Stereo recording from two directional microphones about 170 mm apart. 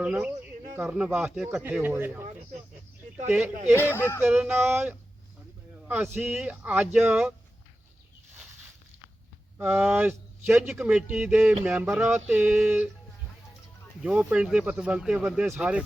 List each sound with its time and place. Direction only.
0.0 s a man's voice: 10° right (ahead or behind)
3.8 s speech: 15° left (ahead or behind)
4.2 s a man's voice: 10° right (ahead or behind)
9.6 s a man's voice: 10° right (ahead or behind)
14.0 s speech: 5° right (ahead or behind)